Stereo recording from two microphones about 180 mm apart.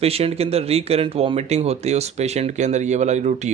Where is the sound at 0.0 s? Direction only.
35° right (ahead or behind).